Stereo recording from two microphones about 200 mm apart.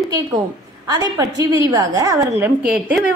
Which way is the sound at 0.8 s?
15° right (ahead or behind).